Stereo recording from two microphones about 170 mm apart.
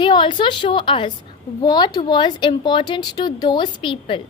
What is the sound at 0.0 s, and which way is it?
A woman's voice, 25° left (ahead or behind).